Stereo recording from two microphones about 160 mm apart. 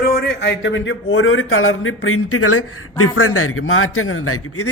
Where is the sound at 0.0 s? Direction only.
80° left.